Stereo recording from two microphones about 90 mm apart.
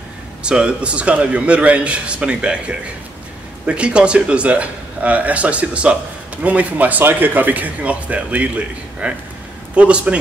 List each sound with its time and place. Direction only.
0.4 s speech: 10° right (ahead or behind)